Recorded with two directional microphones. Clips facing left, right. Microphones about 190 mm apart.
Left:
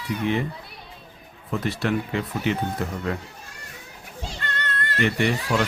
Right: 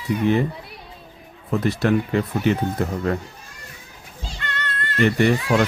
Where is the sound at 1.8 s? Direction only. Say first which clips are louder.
Right 5 dB; 45° right (ahead or behind).